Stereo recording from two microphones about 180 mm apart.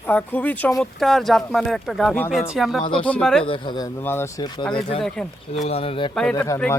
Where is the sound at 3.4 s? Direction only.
30° left (ahead or behind).